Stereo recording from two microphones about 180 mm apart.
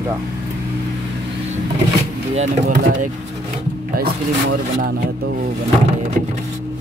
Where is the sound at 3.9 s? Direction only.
55° right (ahead or behind).